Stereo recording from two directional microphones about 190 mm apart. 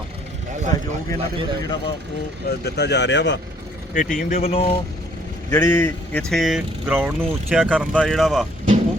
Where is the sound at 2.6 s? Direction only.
60° left (ahead or behind).